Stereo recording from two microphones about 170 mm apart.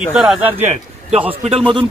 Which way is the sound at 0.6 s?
40° right (ahead or behind).